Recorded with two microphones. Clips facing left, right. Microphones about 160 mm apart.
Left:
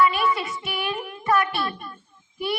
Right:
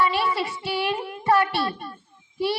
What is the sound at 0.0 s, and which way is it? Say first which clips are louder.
Child singing: left 2 dB; 30° right (ahead or behind).